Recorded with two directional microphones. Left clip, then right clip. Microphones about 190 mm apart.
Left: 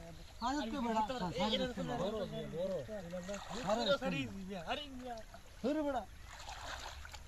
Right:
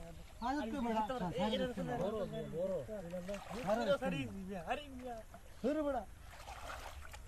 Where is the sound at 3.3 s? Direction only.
20° right (ahead or behind).